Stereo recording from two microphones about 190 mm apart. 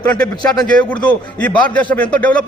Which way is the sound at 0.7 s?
5° left (ahead or behind).